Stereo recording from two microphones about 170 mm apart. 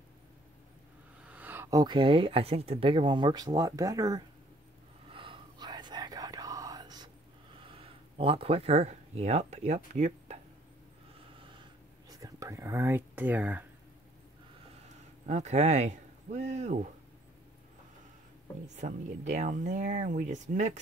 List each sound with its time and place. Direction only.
1.2 s speech: 10° right (ahead or behind)
5.1 s whispering: 30° right (ahead or behind)
7.6 s speech: 35° right (ahead or behind)
12.1 s speech: 20° right (ahead or behind)
15.2 s speech: 40° right (ahead or behind)
18.8 s speech: 45° right (ahead or behind)